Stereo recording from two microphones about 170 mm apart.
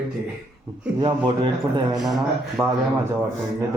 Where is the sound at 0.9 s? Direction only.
25° right (ahead or behind).